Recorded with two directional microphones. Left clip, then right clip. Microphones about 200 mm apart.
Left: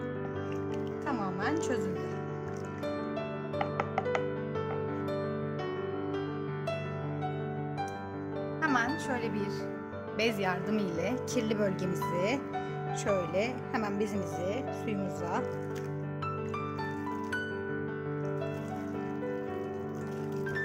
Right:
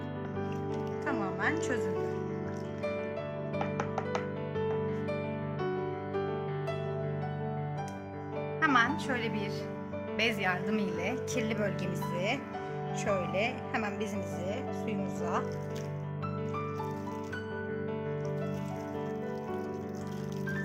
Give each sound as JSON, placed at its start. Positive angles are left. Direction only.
{"t": 1.0, "sound": "music", "side_deg": 50}
{"t": 8.6, "sound": "music", "side_deg": 40}
{"t": 10.2, "sound": "speech", "side_deg": 45}